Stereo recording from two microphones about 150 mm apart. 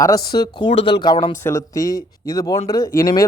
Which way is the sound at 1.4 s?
20° left (ahead or behind).